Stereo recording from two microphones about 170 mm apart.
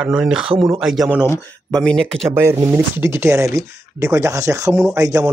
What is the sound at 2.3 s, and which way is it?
Speech, 15° right (ahead or behind).